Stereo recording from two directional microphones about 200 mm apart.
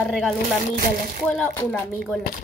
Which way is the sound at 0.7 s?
45° right (ahead or behind).